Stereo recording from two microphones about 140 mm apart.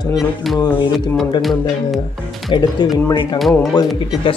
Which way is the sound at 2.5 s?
35° left (ahead or behind).